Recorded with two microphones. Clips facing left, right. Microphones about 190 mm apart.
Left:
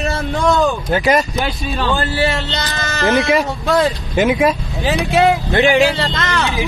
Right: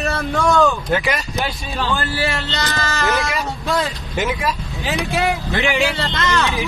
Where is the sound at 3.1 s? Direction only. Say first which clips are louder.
Left 7 dB; 60° left (ahead or behind).